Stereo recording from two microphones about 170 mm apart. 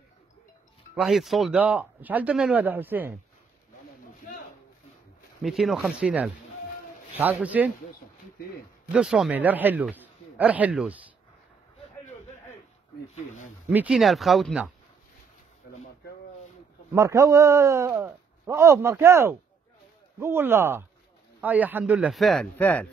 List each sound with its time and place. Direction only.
0.9 s a man's voice: centre (ahead or behind)
5.4 s a man's voice: centre (ahead or behind)
8.9 s a man's voice: 5° right (ahead or behind)
13.1 s speech: 45° left (ahead or behind)
13.7 s speech: 5° right (ahead or behind)
16.9 s a man's voice: 15° right (ahead or behind); by 22.8 s 10° left (ahead or behind)